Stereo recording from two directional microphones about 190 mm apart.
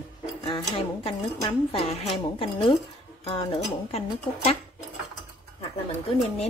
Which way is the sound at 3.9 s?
30° left (ahead or behind).